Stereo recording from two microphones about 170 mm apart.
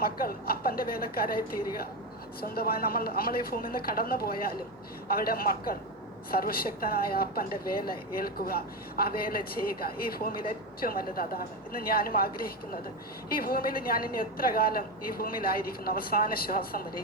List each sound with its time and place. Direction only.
0.0 s a woman's voice: 60° left (ahead or behind)